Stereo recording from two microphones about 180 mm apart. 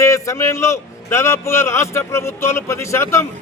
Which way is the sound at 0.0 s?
15° left (ahead or behind).